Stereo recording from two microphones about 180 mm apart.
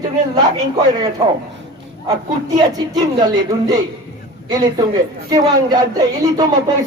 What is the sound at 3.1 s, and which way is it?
Speech, 25° right (ahead or behind).